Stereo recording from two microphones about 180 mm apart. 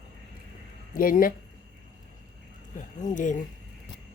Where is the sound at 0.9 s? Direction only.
50° left (ahead or behind).